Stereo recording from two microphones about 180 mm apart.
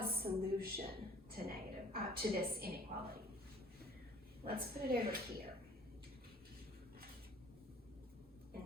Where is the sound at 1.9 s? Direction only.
55° right (ahead or behind).